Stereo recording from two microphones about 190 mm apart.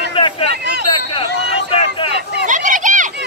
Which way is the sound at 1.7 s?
35° left (ahead or behind).